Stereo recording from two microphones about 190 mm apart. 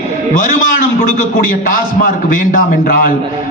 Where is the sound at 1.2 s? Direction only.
45° left (ahead or behind).